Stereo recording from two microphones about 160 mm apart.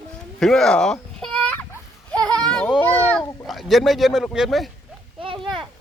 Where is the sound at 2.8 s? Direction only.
10° left (ahead or behind).